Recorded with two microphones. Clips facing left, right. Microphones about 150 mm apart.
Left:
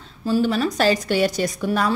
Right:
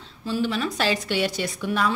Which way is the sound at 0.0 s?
40° left (ahead or behind).